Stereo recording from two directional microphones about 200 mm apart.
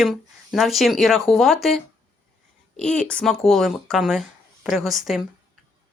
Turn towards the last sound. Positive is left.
turn(degrees=0)  # may be behind; listen again after turning